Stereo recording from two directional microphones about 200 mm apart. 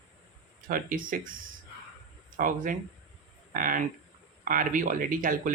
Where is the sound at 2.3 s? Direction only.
45° right (ahead or behind).